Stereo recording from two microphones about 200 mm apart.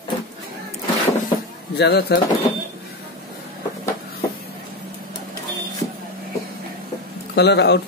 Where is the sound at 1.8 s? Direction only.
55° left (ahead or behind).